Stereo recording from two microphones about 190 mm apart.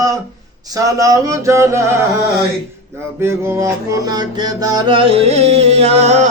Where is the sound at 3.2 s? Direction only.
15° right (ahead or behind).